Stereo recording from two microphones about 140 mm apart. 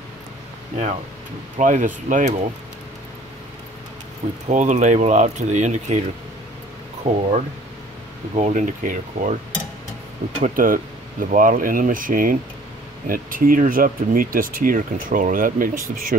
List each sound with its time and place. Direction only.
1.6 s speech: 65° right (ahead or behind)
4.5 s speech: 60° right (ahead or behind)
7.0 s speech: 60° right (ahead or behind)
10.4 s speech: 80° right